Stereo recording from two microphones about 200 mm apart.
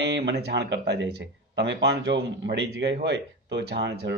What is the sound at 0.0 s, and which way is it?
Speech, 60° right (ahead or behind).